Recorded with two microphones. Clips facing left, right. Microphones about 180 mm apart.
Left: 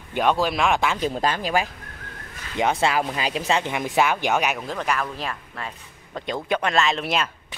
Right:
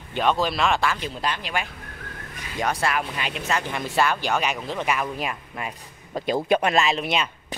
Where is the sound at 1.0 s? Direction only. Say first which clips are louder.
Left 5 dB; 45° left (ahead or behind).